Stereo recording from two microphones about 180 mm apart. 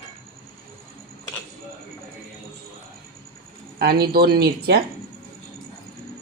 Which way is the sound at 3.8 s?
60° right (ahead or behind).